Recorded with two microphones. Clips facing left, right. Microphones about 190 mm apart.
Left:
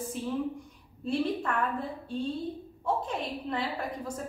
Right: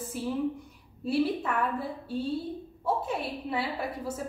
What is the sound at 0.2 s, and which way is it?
A woman's voice, 10° right (ahead or behind).